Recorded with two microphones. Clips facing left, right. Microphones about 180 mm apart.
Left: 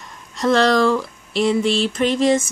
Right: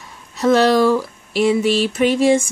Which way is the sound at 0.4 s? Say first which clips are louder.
Right 2 dB; 5° right (ahead or behind).